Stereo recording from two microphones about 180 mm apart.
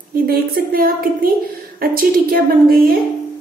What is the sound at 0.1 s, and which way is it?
A woman's voice, 55° right (ahead or behind).